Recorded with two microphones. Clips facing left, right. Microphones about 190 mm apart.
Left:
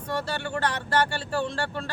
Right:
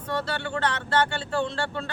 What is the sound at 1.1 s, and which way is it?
Speech, 10° left (ahead or behind).